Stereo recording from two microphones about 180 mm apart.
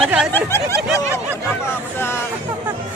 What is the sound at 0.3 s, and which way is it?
Speech, 15° left (ahead or behind).